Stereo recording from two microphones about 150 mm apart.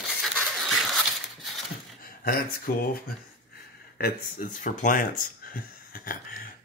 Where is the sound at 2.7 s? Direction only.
85° left.